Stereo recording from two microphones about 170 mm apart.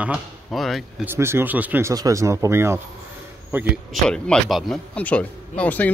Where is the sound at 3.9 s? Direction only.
5° left (ahead or behind).